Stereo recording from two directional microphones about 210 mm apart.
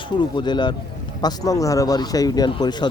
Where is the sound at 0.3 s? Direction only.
20° left (ahead or behind).